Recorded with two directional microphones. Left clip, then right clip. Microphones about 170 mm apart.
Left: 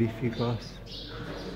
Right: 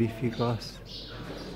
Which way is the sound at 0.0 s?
20° right (ahead or behind).